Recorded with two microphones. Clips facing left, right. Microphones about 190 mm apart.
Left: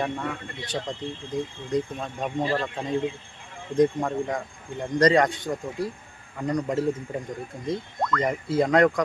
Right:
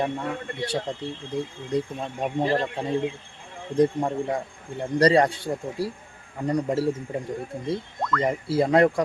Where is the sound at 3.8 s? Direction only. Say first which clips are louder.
Even; 30° right (ahead or behind).